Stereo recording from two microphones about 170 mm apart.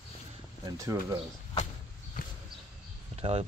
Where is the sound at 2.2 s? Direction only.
50° left (ahead or behind).